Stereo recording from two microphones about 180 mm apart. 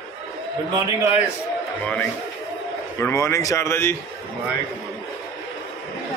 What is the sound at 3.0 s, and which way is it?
Speech, 15° left (ahead or behind).